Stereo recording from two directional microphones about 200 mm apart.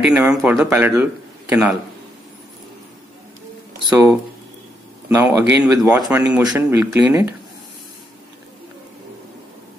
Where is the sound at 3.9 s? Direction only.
10° right (ahead or behind).